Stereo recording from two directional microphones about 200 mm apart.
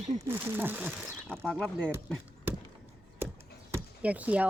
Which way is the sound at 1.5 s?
5° left (ahead or behind).